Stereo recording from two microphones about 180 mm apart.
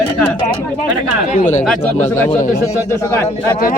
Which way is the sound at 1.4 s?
40° left (ahead or behind).